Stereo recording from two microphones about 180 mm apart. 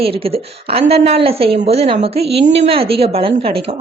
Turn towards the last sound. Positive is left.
turn(degrees=-30)  # may be behind; listen again after turning